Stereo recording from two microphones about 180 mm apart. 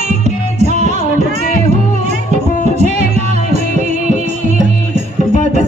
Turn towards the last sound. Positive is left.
turn(degrees=-40)  # may be behind; listen again after turning